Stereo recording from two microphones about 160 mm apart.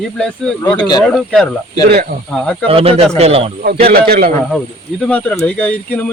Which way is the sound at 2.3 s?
5° left (ahead or behind).